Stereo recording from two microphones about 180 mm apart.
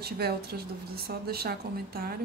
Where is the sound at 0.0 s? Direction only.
60° right (ahead or behind).